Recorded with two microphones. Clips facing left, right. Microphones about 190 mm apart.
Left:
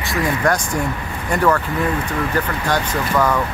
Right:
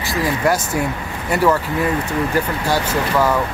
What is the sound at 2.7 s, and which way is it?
Speech, 10° right (ahead or behind).